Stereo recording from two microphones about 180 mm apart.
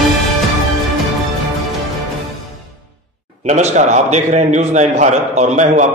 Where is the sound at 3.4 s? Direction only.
40° right (ahead or behind).